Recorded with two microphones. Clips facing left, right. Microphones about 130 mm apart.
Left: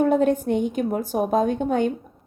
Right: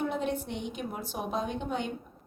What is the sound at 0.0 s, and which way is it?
A woman's voice, 45° left (ahead or behind).